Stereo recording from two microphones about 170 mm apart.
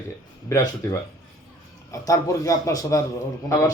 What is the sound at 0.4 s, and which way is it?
A man's voice, 20° left (ahead or behind).